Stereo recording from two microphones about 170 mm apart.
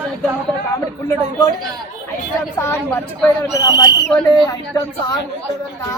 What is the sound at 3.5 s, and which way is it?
Speech, 20° left (ahead or behind).